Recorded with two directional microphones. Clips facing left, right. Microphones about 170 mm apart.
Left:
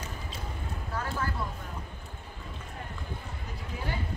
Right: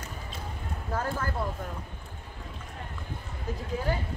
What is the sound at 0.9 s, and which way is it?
Speech, 50° right (ahead or behind).